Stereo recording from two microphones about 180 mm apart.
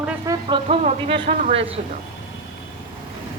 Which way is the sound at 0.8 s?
40° right (ahead or behind).